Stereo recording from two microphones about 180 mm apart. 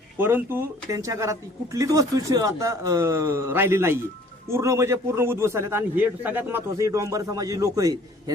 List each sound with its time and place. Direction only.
0.2 s speech: 10° right (ahead or behind)